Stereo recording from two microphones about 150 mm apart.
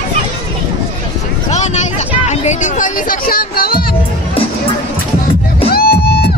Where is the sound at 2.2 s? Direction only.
55° left (ahead or behind); by 3.8 s 90° left.